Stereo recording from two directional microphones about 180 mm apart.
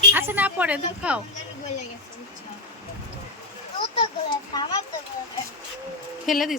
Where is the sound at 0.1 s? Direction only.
10° right (ahead or behind).